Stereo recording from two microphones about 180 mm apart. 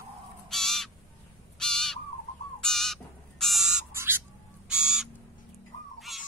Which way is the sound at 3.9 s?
15° right (ahead or behind).